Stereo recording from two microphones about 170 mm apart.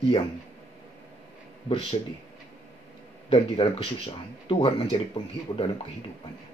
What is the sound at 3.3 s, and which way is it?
Speech, 30° left (ahead or behind).